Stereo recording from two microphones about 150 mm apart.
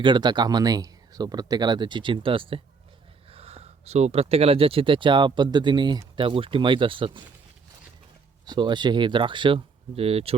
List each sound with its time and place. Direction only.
0.0 s speech: 30° right (ahead or behind)
8.4 s speech: 30° right (ahead or behind)